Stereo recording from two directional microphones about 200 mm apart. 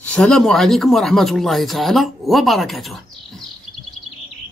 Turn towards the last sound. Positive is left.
turn(degrees=0)  # may be behind; listen again after turning